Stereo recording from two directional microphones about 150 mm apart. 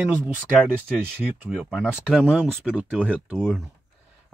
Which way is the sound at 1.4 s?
5° left (ahead or behind).